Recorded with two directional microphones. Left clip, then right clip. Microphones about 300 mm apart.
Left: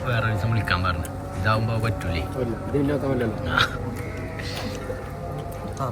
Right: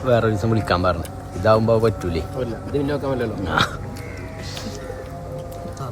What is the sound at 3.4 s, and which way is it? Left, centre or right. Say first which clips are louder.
Speech: right 2 dB; right.